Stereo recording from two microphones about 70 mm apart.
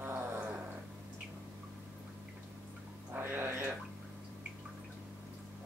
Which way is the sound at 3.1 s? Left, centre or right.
Right.